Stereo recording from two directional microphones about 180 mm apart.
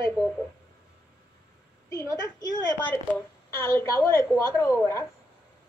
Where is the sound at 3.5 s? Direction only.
15° left (ahead or behind).